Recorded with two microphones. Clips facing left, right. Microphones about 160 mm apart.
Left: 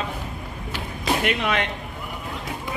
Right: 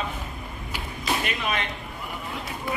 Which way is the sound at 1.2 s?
70° left (ahead or behind).